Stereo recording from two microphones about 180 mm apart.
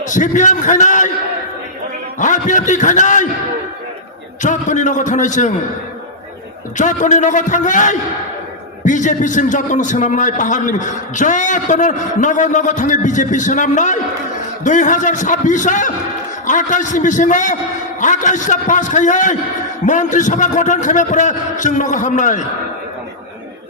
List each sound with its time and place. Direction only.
0.1 s a man's voice: 45° left (ahead or behind)
2.1 s a man's voice: 45° left (ahead or behind)
4.4 s a man's voice: 45° left (ahead or behind)
6.7 s a man's voice: 45° left (ahead or behind)